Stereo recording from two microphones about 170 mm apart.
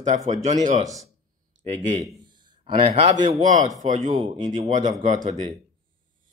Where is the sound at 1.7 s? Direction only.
35° right (ahead or behind).